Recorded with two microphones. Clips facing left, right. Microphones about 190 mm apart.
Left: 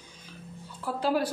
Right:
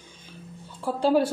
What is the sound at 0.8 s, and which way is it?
Speech, 30° right (ahead or behind).